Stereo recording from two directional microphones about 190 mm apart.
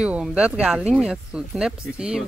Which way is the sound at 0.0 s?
5° right (ahead or behind).